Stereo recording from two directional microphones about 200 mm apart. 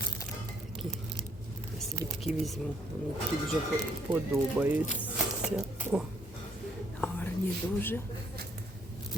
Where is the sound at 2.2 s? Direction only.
Centre (ahead or behind).